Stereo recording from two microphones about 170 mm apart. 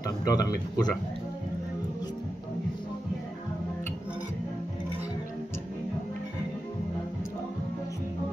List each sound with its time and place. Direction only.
0.2 s speech: 20° left (ahead or behind)